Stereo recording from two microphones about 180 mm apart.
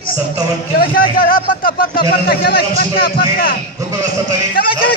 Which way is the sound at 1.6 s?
55° left (ahead or behind).